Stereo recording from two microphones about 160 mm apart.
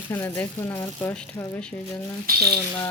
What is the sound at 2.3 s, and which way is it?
Speech, 65° right (ahead or behind).